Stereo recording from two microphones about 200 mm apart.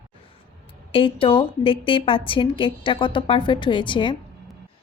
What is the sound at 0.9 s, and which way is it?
A woman's voice, 25° left (ahead or behind).